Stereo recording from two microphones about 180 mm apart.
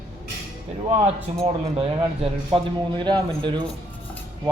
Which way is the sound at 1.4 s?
35° right (ahead or behind).